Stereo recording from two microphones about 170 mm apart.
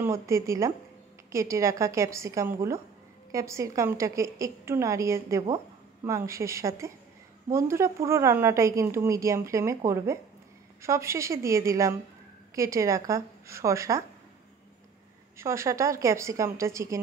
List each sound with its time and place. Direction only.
0.0 s a woman's voice: 15° right (ahead or behind)
10.8 s a woman's voice: 15° right (ahead or behind)
15.3 s a woman's voice: 15° right (ahead or behind)